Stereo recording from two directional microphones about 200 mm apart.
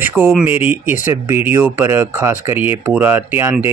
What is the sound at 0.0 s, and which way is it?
Speech, 10° right (ahead or behind).